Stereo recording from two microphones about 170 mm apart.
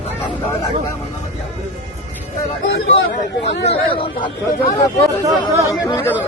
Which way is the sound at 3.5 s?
90° left.